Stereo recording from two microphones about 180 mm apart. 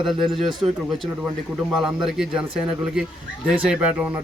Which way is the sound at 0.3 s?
Centre (ahead or behind).